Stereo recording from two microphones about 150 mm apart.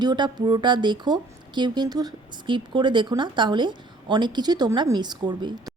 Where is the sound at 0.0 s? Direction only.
30° right (ahead or behind).